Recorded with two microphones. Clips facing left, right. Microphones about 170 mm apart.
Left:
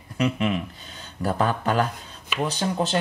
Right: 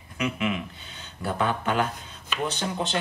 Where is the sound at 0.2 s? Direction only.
35° left (ahead or behind).